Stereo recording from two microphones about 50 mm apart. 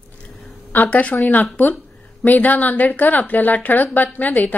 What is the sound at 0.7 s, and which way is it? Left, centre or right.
A woman's voice, left.